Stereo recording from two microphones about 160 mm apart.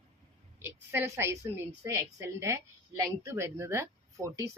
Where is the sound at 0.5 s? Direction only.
15° right (ahead or behind).